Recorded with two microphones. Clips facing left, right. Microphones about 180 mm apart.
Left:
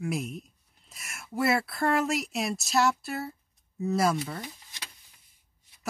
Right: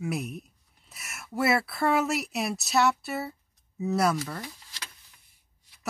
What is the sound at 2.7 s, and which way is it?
Speech, 65° right (ahead or behind).